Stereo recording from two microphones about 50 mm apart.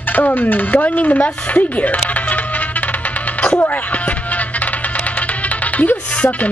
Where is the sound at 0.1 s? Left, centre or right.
Left.